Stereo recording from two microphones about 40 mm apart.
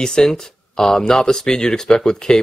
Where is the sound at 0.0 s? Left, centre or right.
Centre.